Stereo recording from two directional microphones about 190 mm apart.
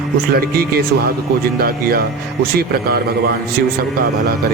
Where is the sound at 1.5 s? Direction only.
50° right (ahead or behind).